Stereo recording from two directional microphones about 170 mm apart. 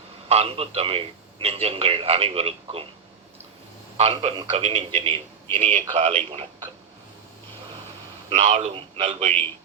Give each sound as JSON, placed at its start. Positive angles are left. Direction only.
{"t": 0.3, "sound": "a man's voice", "side_deg": -35}
{"t": 3.9, "sound": "a man's voice", "side_deg": -35}
{"t": 8.3, "sound": "a man's voice", "side_deg": -45}